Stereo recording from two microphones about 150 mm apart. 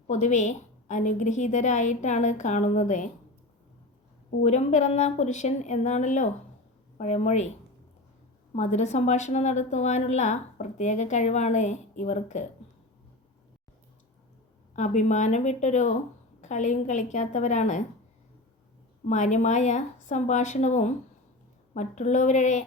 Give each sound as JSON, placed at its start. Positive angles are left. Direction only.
{"t": 0.1, "sound": "a woman's voice", "side_deg": 55}
{"t": 4.4, "sound": "a woman's voice", "side_deg": 50}
{"t": 8.5, "sound": "a woman's voice", "side_deg": 50}
{"t": 14.8, "sound": "a woman's voice", "side_deg": 50}
{"t": 19.0, "sound": "a woman's voice", "side_deg": 55}